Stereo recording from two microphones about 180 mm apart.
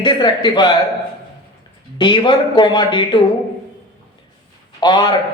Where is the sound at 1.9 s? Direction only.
25° left (ahead or behind).